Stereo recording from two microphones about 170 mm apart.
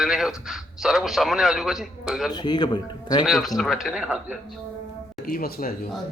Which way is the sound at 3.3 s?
Centre (ahead or behind).